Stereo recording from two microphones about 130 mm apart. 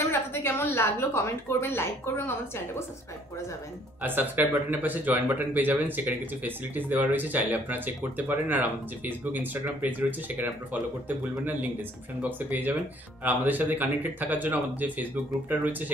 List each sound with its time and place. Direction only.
0.1 s a woman's voice: 20° left (ahead or behind)
4.0 s speech: 15° right (ahead or behind)